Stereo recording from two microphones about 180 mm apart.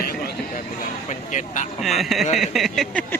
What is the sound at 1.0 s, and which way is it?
Speech, 45° left (ahead or behind).